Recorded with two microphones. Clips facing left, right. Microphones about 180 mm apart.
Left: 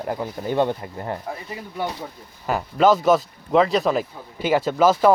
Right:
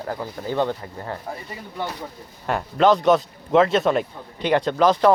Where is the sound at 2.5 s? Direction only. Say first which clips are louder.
Even; 5° left (ahead or behind).